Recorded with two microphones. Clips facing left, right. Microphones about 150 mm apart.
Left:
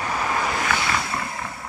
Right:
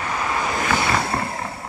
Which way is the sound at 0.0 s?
15° left (ahead or behind).